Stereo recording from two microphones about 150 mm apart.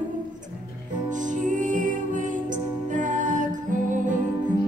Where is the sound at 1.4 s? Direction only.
60° right (ahead or behind).